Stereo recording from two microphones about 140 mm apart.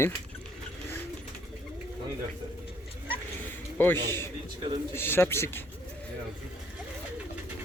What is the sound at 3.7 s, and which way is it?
Speech, 15° left (ahead or behind).